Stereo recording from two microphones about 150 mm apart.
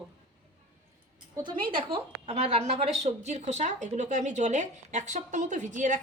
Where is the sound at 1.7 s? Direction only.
35° right (ahead or behind).